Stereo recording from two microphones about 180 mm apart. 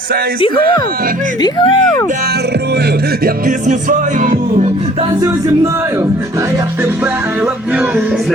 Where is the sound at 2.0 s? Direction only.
60° right (ahead or behind); by 5.1 s 35° right (ahead or behind).